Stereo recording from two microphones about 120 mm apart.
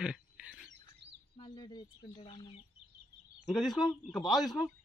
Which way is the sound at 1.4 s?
40° left (ahead or behind).